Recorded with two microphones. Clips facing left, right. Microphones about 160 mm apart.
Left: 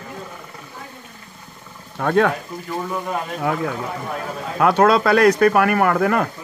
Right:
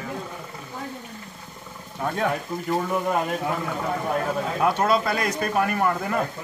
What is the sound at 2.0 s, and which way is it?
Speech, 70° left (ahead or behind).